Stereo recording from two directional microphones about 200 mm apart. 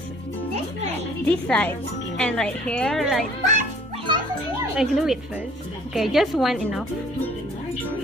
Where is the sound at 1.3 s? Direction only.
10° left (ahead or behind).